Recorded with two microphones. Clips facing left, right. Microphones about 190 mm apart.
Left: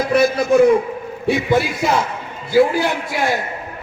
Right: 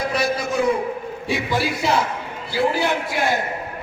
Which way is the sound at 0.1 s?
60° left (ahead or behind).